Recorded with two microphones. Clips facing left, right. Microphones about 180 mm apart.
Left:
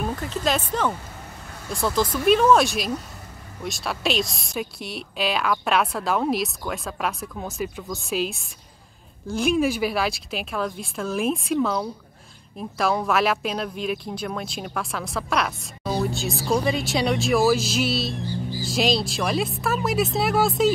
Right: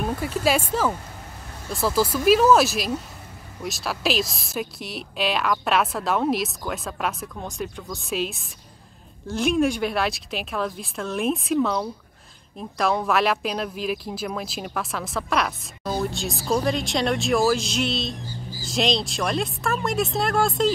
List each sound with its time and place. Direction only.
0.0 s speech: 5° right (ahead or behind)